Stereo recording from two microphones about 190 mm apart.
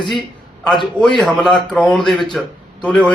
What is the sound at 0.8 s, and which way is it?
Speech, 25° left (ahead or behind).